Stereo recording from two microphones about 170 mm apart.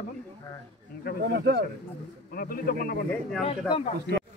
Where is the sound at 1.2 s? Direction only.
85° right.